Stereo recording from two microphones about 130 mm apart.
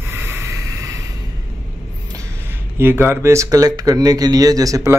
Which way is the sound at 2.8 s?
15° right (ahead or behind).